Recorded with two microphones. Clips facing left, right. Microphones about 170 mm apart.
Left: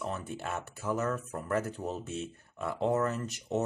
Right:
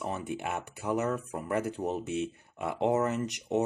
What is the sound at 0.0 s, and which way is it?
Speech, 15° right (ahead or behind).